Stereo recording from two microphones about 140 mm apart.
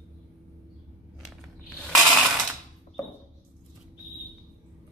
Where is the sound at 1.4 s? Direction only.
Centre (ahead or behind).